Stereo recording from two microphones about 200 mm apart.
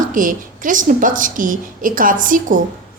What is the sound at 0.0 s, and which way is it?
A woman's voice, 40° right (ahead or behind).